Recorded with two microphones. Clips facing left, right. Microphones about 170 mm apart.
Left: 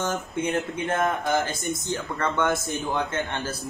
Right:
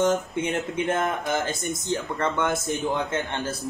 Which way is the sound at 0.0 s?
20° right (ahead or behind).